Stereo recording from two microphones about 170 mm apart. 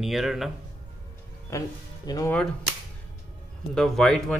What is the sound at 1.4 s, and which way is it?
Speech, 20° left (ahead or behind).